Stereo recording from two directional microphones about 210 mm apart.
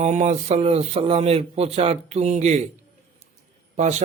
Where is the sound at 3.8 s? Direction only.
35° right (ahead or behind).